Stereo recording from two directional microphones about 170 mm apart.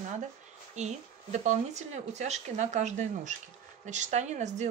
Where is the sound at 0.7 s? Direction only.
45° right (ahead or behind).